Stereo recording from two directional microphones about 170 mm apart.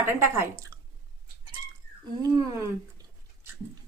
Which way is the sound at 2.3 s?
20° right (ahead or behind).